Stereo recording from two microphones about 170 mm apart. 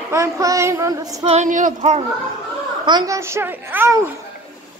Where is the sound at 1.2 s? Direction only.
40° right (ahead or behind).